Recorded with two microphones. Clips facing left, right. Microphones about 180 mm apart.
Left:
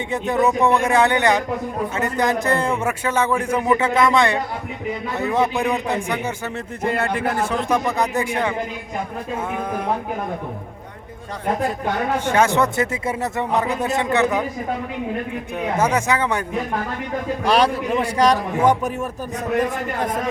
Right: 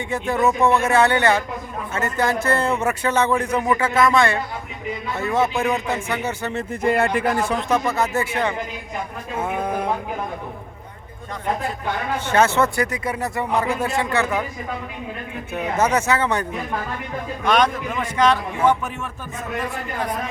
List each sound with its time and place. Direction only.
0.1 s a man's voice: 20° left (ahead or behind)
6.8 s speech: 10° right (ahead or behind)
7.7 s a man's voice: 15° left (ahead or behind)
12.2 s speech: 10° left (ahead or behind)
15.8 s a man's voice: 10° left (ahead or behind)
17.4 s a man's voice: 35° left (ahead or behind)